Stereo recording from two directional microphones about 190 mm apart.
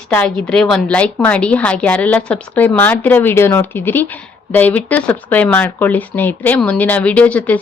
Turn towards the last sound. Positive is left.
turn(degrees=5)  # may be behind; listen again after turning